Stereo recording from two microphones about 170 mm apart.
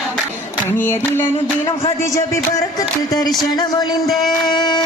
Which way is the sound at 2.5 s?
20° left (ahead or behind).